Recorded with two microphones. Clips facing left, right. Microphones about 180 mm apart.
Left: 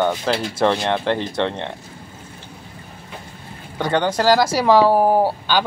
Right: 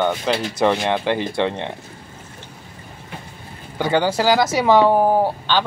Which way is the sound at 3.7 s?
5° right (ahead or behind).